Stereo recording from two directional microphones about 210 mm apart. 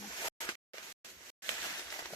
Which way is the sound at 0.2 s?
15° left (ahead or behind).